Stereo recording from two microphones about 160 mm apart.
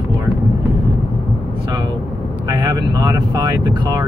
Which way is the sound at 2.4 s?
25° right (ahead or behind).